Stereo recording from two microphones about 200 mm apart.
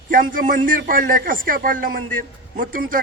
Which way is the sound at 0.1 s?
45° right (ahead or behind).